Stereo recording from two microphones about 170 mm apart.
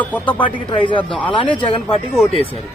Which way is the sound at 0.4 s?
30° left (ahead or behind).